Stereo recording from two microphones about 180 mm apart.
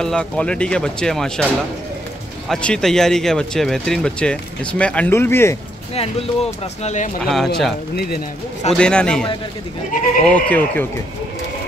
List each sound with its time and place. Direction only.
0.0 s speech: 5° left (ahead or behind)
2.4 s speech: 5° left (ahead or behind)
5.9 s speech: 35° left (ahead or behind)
7.2 s speech: centre (ahead or behind)
7.9 s speech: 60° left (ahead or behind)
8.7 s speech: 5° left (ahead or behind)